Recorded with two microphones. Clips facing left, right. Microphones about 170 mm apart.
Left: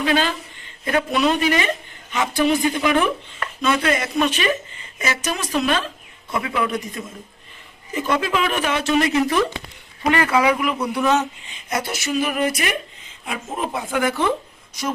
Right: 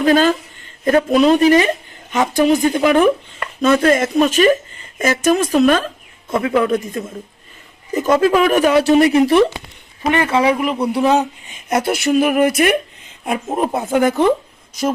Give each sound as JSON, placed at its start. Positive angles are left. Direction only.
{"t": 0.0, "sound": "a woman's voice", "side_deg": -45}
{"t": 9.1, "sound": "speech", "side_deg": -25}
{"t": 11.7, "sound": "a woman's voice", "side_deg": -55}